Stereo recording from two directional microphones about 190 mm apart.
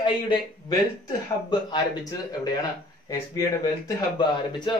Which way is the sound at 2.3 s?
20° left (ahead or behind).